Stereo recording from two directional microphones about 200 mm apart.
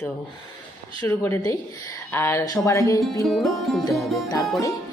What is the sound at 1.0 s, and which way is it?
Speech, 10° left (ahead or behind).